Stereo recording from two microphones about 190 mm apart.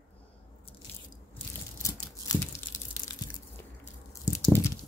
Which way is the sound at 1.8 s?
15° left (ahead or behind).